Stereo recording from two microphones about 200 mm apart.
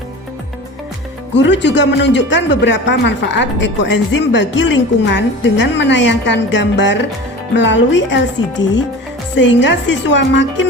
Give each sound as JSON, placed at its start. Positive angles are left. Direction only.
{"t": 1.3, "sound": "speech", "side_deg": 60}